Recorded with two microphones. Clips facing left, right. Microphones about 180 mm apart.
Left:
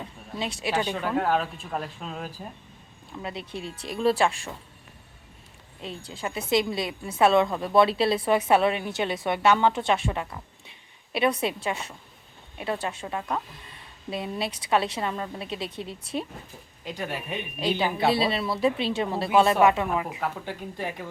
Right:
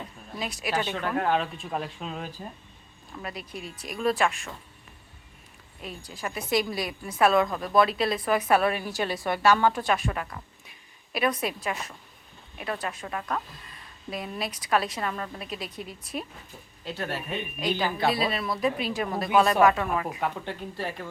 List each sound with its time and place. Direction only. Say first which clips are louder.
0.3 s a woman's voice: left 3 dB; 25° left (ahead or behind)
0.7 s speech: left 2 dB; 10° left (ahead or behind)
3.2 s a woman's voice: left 3 dB; 25° left (ahead or behind)
5.8 s a woman's voice: left 2 dB; 25° left (ahead or behind)
16.8 s speech: even; 15° left (ahead or behind)
17.9 s a woman's voice: left 2 dB; 25° left (ahead or behind)
20.1 s speech: right 1 dB; 5° left (ahead or behind)